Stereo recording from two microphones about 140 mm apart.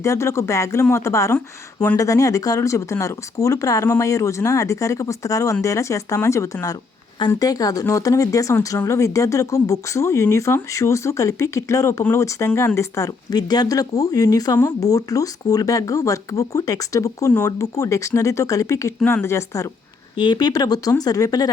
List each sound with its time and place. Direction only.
0.0 s speech: 20° left (ahead or behind)
20.1 s speech: 30° left (ahead or behind)